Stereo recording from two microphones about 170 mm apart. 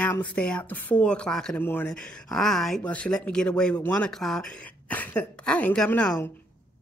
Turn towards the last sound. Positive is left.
turn(degrees=5)  # may be behind; listen again after turning